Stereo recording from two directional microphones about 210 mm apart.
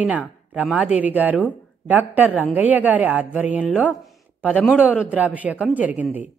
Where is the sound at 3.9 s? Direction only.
5° left (ahead or behind).